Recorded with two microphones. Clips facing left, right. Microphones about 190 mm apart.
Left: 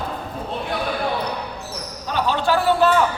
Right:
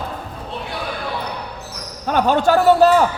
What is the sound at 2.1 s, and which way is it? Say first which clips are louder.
Speech: right 5 dB; 50° right (ahead or behind).